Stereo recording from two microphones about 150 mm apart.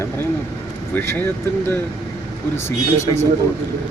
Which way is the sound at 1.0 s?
15° left (ahead or behind).